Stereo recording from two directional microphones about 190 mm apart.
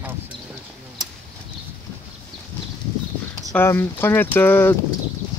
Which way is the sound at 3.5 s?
10° left (ahead or behind).